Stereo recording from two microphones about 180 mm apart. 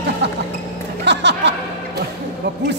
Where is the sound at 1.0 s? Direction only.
75° right (ahead or behind).